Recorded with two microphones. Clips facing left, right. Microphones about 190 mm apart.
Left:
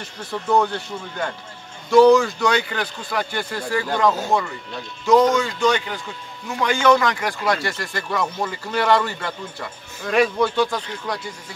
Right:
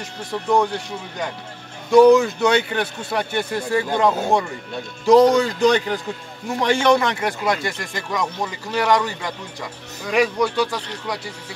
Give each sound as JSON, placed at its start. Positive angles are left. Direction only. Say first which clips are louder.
{"t": 1.9, "sound": "a man's voice", "louder": "right 1 dB", "side_deg": -15}